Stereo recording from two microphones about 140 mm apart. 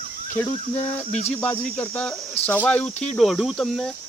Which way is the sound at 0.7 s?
50° left (ahead or behind).